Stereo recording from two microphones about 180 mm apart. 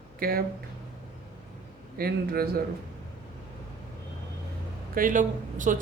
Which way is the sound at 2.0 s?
55° right (ahead or behind).